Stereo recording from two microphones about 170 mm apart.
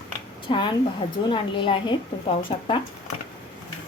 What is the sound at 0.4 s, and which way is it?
A woman's voice, 25° left (ahead or behind).